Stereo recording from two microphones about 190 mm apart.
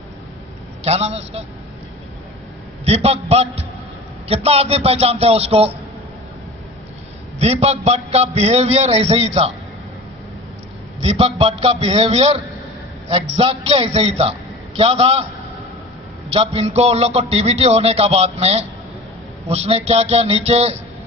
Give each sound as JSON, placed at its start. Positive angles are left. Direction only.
{"t": 0.8, "sound": "a man's voice", "side_deg": -35}
{"t": 2.8, "sound": "a man's voice", "side_deg": -30}
{"t": 7.3, "sound": "a man's voice", "side_deg": -35}
{"t": 11.0, "sound": "a man's voice", "side_deg": -30}
{"t": 16.3, "sound": "a man's voice", "side_deg": -30}